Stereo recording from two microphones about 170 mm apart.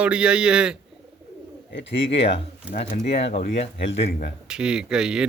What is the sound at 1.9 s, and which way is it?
Speech, 90° left.